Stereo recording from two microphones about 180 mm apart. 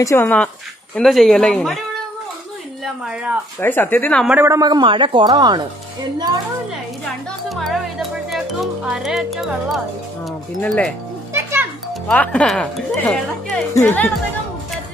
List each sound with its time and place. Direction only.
0.0 s speech: 15° left (ahead or behind)
2.8 s speech: 5° right (ahead or behind)
3.6 s speech: 10° left (ahead or behind)
4.3 s a man's voice: 15° right (ahead or behind)
7.4 s speech: centre (ahead or behind)
8.8 s speech: 5° right (ahead or behind)
11.3 s music: 15° right (ahead or behind)
11.9 s speech: 5° left (ahead or behind)